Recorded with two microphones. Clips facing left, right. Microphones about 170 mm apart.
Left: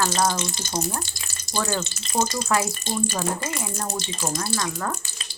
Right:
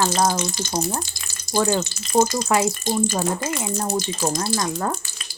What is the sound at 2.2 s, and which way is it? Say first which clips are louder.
Speech: right 2 dB; 15° right (ahead or behind).